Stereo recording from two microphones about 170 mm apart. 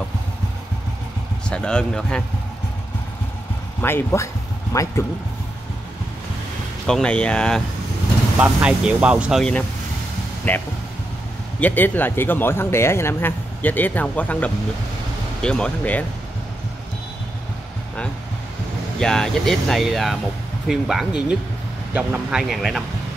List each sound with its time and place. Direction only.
1.5 s speech: 5° left (ahead or behind)
3.8 s speech: 15° left (ahead or behind)
6.9 s speech: 5° left (ahead or behind)
8.4 s speech: 5° right (ahead or behind)
9.4 s speech: 10° left (ahead or behind)
18.9 s speech: 5° left (ahead or behind)